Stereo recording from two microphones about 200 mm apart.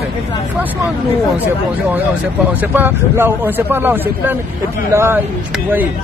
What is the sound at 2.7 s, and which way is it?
Speech, 10° right (ahead or behind).